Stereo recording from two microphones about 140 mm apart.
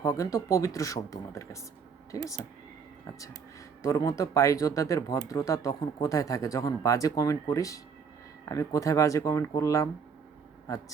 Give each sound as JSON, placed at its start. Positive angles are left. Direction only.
{"t": 0.0, "sound": "speech", "side_deg": 25}